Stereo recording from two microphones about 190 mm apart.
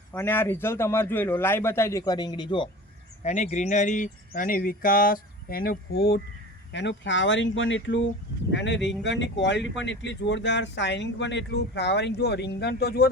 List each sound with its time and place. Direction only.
0.1 s a man's voice: 10° left (ahead or behind)
3.2 s speech: 40° left (ahead or behind); by 6.2 s 55° left (ahead or behind)
6.7 s speech: 70° left (ahead or behind)
8.5 s speech: 70° left (ahead or behind)